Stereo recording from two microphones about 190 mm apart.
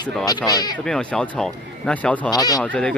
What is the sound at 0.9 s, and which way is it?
Speech, 5° left (ahead or behind).